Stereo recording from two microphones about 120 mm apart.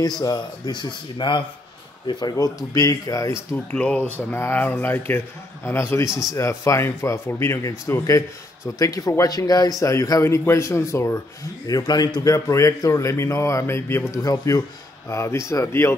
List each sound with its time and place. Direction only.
0.2 s a man's voice: 35° left (ahead or behind)
3.7 s a man's voice: 10° left (ahead or behind)